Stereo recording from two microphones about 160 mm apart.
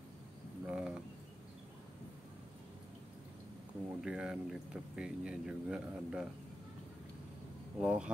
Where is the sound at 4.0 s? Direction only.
5° right (ahead or behind).